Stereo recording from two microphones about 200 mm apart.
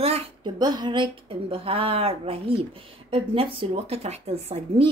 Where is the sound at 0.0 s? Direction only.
25° right (ahead or behind).